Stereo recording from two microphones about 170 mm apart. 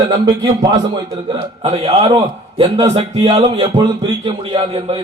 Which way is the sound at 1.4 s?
40° right (ahead or behind).